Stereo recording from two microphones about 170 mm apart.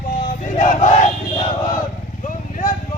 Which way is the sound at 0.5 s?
50° left (ahead or behind).